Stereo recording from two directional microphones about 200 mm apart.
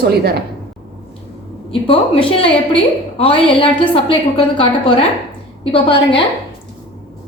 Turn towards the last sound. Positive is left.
turn(degrees=25)  # may be behind; listen again after turning